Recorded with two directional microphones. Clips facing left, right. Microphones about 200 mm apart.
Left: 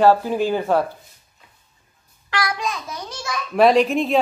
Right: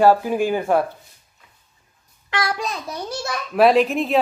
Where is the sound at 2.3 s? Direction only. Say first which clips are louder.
Even; 30° right (ahead or behind).